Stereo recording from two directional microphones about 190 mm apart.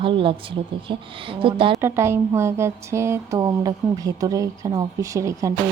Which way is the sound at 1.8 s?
15° right (ahead or behind).